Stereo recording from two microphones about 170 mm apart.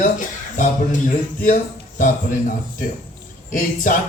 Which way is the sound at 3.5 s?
50° left (ahead or behind).